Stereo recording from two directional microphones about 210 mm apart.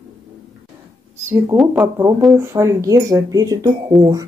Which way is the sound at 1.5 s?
10° right (ahead or behind).